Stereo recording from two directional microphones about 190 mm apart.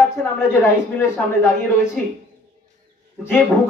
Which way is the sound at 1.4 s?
15° left (ahead or behind).